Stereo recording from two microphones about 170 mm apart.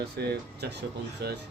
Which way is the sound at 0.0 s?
70° right (ahead or behind).